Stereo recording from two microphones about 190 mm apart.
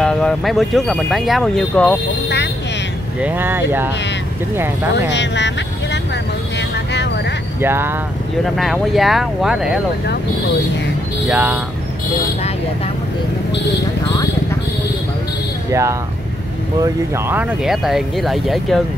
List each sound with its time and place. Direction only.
0.0 s speech: 5° left (ahead or behind)
2.2 s vehicle: 65° left (ahead or behind)
3.2 s speech: 10° right (ahead or behind)
5.1 s speech: 65° left (ahead or behind)
7.6 s speech: 10° right (ahead or behind)
8.5 s speech: centre (ahead or behind)
11.2 s speech: 10° right (ahead or behind)
15.7 s speech: 15° right (ahead or behind); by 18.8 s centre (ahead or behind)